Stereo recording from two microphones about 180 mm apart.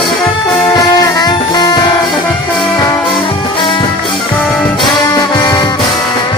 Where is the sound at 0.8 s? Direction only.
20° left (ahead or behind).